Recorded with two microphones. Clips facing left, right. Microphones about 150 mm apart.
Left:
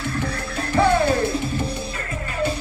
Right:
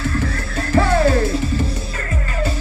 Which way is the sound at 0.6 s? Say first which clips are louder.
Right 1 dB; 90° right.